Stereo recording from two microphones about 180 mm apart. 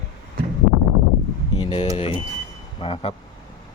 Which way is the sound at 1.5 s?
30° left (ahead or behind).